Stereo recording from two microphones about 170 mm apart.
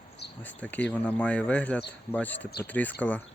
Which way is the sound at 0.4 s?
10° left (ahead or behind).